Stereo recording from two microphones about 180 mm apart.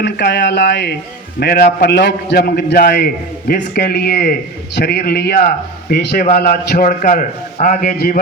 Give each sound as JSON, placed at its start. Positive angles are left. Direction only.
{"t": 0.0, "sound": "speech", "side_deg": 70}
{"t": 1.4, "sound": "a man's voice", "side_deg": 60}